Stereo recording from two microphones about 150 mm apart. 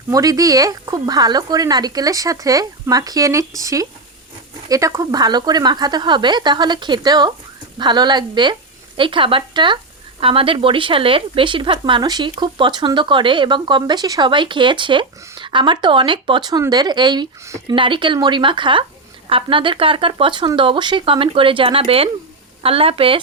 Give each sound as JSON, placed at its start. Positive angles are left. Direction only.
{"t": 0.1, "sound": "speech", "side_deg": -25}
{"t": 17.4, "sound": "speech", "side_deg": -20}
{"t": 17.7, "sound": "speech", "side_deg": -35}